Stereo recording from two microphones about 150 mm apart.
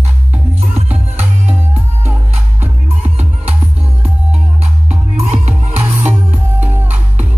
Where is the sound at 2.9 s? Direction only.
45° right (ahead or behind).